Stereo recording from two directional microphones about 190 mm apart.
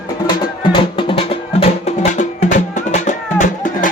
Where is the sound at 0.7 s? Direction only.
30° left (ahead or behind).